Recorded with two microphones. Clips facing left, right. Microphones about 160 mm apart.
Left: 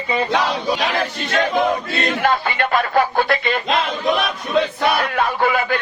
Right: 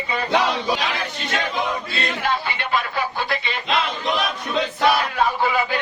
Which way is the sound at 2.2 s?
55° left (ahead or behind).